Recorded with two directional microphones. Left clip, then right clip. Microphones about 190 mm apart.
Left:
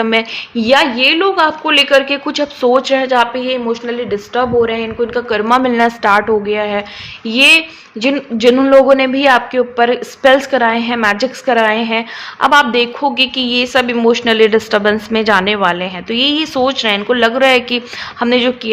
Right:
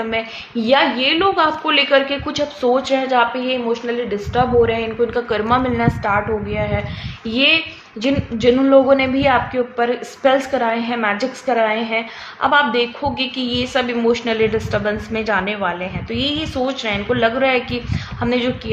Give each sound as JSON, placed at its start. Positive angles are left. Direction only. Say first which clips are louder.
{"t": 0.0, "sound": "a woman's voice", "louder": "left 8 dB", "side_deg": 50}
{"t": 0.5, "sound": "a woman's voice", "louder": "left 4 dB", "side_deg": 35}